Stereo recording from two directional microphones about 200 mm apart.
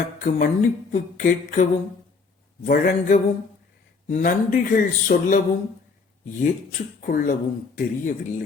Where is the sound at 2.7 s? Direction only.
45° left (ahead or behind).